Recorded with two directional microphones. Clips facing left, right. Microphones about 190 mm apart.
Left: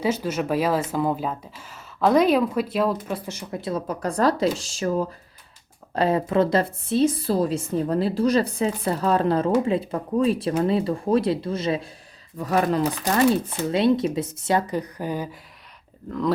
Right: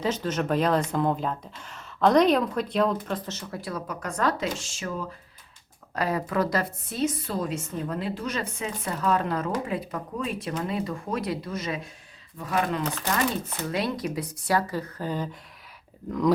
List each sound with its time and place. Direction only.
0.0 s a woman's voice: 10° left (ahead or behind); by 12.8 s 40° left (ahead or behind)
13.7 s speech: 25° left (ahead or behind); by 15.4 s 10° left (ahead or behind)
16.0 s speech: 15° right (ahead or behind)